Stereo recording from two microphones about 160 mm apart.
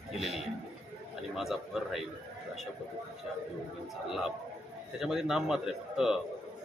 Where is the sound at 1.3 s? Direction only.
Centre (ahead or behind).